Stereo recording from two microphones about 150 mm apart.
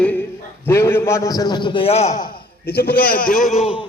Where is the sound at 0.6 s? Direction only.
15° left (ahead or behind); by 2.3 s 50° left (ahead or behind).